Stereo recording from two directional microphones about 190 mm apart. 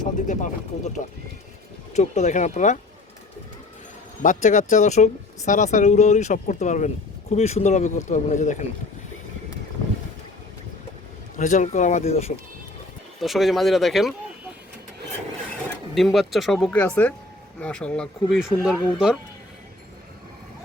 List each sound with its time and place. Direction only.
0.0 s a sound: 40° left (ahead or behind)
1.9 s speech: 35° left (ahead or behind)
4.2 s speech: 40° left (ahead or behind)
11.3 s speech: 40° left (ahead or behind)
13.2 s speech: centre (ahead or behind)
16.0 s speech: centre (ahead or behind)